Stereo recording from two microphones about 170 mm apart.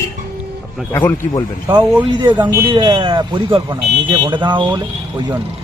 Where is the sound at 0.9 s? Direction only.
15° left (ahead or behind).